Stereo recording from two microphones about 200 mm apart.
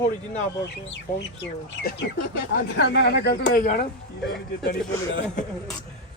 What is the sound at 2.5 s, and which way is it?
Speech, 55° left (ahead or behind).